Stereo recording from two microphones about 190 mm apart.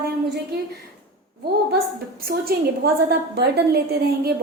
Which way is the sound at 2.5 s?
55° right (ahead or behind).